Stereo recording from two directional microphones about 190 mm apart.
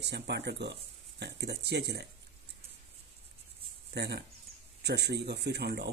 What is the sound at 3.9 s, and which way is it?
Speech, 60° right (ahead or behind).